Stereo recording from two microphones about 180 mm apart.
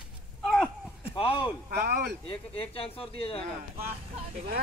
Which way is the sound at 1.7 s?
60° right (ahead or behind).